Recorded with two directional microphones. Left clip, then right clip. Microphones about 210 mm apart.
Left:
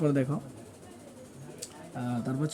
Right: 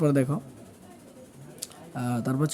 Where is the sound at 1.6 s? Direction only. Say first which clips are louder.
Right 4 dB; 20° right (ahead or behind).